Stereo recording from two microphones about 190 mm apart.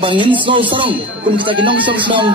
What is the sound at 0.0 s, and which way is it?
A man's voice, 25° right (ahead or behind).